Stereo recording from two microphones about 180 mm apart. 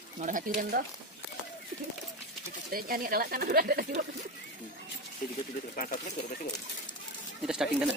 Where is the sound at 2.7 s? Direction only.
55° right (ahead or behind).